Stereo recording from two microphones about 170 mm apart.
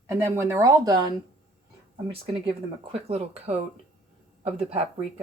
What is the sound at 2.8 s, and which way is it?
Speech, 35° right (ahead or behind).